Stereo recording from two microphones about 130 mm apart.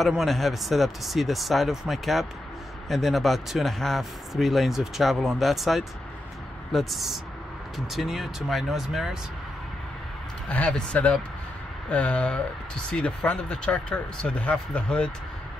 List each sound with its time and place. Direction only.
0.0 s speech: centre (ahead or behind)
10.5 s speech: 10° left (ahead or behind)